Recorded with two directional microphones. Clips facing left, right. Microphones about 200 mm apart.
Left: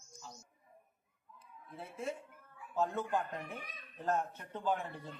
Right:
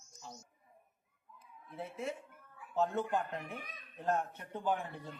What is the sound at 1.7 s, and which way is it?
A man's voice, 15° right (ahead or behind).